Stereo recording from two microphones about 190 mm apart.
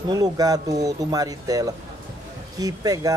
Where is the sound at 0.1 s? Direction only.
20° right (ahead or behind).